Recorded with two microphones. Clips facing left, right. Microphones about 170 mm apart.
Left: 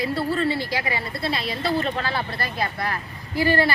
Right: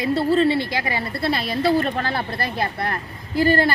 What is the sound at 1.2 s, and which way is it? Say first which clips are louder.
A woman's voice: right 8 dB; 55° right (ahead or behind).